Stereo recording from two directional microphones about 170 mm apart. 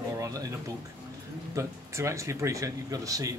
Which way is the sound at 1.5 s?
15° right (ahead or behind).